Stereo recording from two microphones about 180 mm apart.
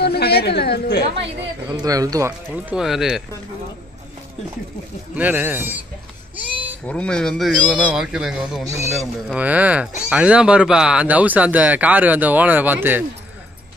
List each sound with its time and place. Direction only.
0.0 s a woman's voice: 65° left (ahead or behind)
1.7 s speech: 20° right (ahead or behind)
2.5 s speech: 5° right (ahead or behind)
5.1 s speech: 10° right (ahead or behind)
6.9 s speech: 5° left (ahead or behind); by 13.0 s 10° right (ahead or behind)